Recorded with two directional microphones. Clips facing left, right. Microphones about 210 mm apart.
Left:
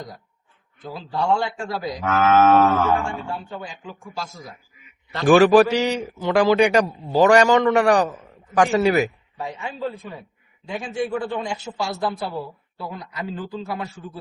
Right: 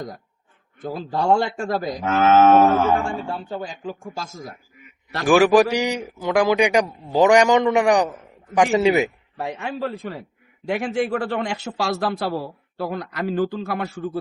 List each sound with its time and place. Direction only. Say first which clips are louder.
0.9 s a man's voice: right 3 dB; 45° right (ahead or behind)
2.0 s moo: right 1 dB; 25° right (ahead or behind)
2.6 s a man's voice: right 2 dB; 15° right (ahead or behind)
3.7 s a man's voice: right 6 dB; 40° right (ahead or behind)
5.2 s a man's voice: left 2 dB; 10° right (ahead or behind)
9.4 s a man's voice: right 2 dB; 70° right (ahead or behind)